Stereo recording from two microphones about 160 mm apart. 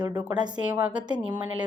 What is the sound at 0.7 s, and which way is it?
Speech, 10° right (ahead or behind).